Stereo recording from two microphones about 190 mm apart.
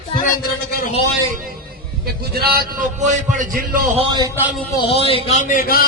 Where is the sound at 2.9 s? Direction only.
40° right (ahead or behind).